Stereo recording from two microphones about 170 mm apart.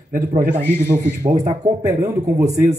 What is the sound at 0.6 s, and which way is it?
Speech, 15° left (ahead or behind).